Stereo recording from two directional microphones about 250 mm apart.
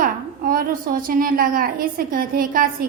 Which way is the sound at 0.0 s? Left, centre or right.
Right.